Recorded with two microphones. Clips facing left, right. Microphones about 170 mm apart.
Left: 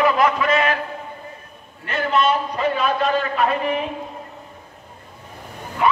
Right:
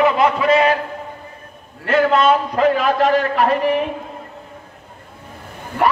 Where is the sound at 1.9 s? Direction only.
90° right.